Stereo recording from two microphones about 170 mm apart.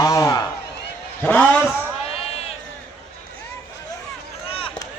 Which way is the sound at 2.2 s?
35° left (ahead or behind).